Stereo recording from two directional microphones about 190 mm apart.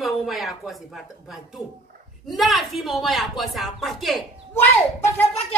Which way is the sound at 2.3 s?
Centre (ahead or behind).